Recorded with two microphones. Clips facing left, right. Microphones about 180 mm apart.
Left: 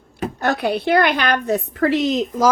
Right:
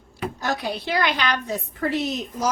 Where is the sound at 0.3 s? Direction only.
60° left (ahead or behind).